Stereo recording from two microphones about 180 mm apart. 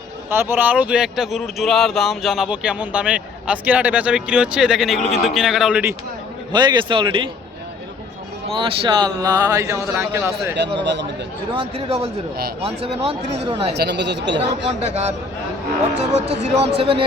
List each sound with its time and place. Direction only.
0.3 s speech: 10° right (ahead or behind)
6.5 s speech: 25° right (ahead or behind)
8.4 s speech: 30° right (ahead or behind); by 10.5 s 15° right (ahead or behind)
10.8 s speech: 75° right (ahead or behind)
11.5 s speech: 30° right (ahead or behind)
13.5 s speech: 30° right (ahead or behind)
13.7 s speech: 70° right (ahead or behind)
14.7 s speech: 35° right (ahead or behind)